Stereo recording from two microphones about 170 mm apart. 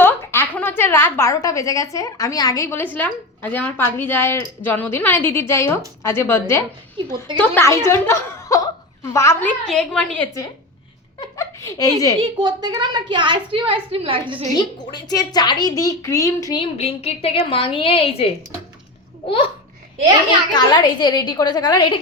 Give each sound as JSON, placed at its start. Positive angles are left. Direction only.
{"t": 0.0, "sound": "a woman's voice", "side_deg": 15}
{"t": 11.3, "sound": "speech", "side_deg": 20}
{"t": 12.2, "sound": "a woman's voice", "side_deg": -25}
{"t": 14.5, "sound": "a woman's voice", "side_deg": 25}
{"t": 16.6, "sound": "a woman's voice", "side_deg": 35}
{"t": 20.5, "sound": "a woman's voice", "side_deg": 25}